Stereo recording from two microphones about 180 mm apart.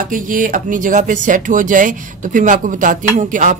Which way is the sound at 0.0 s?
50° right (ahead or behind).